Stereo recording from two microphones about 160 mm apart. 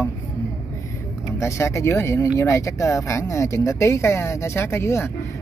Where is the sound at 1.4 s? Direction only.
20° left (ahead or behind).